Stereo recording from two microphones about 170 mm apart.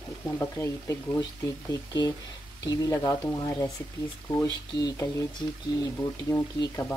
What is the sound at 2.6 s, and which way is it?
Speech, 20° left (ahead or behind).